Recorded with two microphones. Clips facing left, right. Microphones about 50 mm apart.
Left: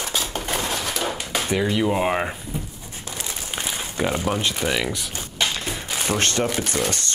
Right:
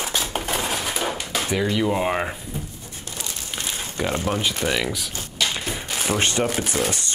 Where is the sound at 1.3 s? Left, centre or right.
Centre.